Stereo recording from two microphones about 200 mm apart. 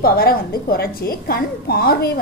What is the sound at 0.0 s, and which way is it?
A woman's voice, 50° left (ahead or behind).